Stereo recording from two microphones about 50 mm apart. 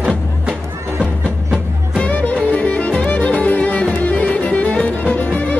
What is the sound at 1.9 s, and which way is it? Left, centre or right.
Music, left.